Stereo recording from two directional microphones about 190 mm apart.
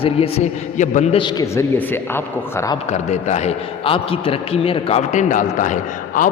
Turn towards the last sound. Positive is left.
turn(degrees=45)  # may be behind; listen again after turning